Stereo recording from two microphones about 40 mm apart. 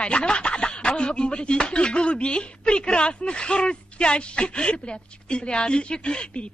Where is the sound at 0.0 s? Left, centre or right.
Left.